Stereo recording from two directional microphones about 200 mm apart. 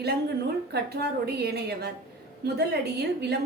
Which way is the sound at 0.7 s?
55° right (ahead or behind).